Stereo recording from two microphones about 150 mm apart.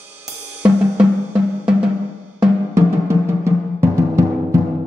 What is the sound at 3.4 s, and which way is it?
Timpani, 20° right (ahead or behind).